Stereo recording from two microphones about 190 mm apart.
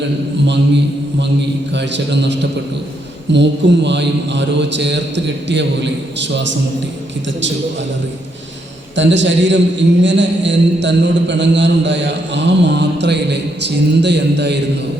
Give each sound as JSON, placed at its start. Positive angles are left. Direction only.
{"t": 1.7, "sound": "a man's voice", "side_deg": -65}
{"t": 9.0, "sound": "a man's voice", "side_deg": -70}